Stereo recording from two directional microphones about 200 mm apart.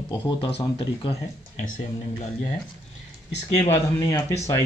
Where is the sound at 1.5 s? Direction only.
40° left (ahead or behind).